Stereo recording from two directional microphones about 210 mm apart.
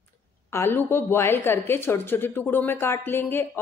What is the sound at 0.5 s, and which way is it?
A woman's voice, 10° left (ahead or behind).